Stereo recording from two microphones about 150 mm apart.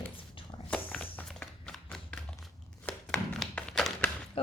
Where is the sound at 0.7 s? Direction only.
10° left (ahead or behind).